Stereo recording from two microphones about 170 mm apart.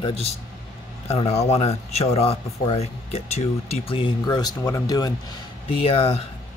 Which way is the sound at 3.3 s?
35° left (ahead or behind).